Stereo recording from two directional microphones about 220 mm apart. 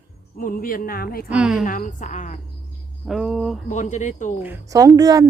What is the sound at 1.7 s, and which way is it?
Speech, 35° left (ahead or behind).